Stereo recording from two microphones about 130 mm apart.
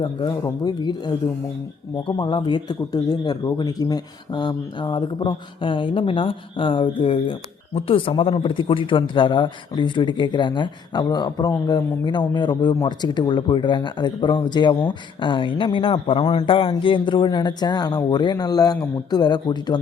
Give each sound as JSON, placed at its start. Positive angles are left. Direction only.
{"t": 0.0, "sound": "speech", "side_deg": 40}